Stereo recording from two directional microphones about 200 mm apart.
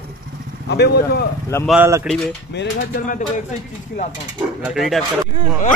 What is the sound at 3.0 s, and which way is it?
Speech, 40° left (ahead or behind).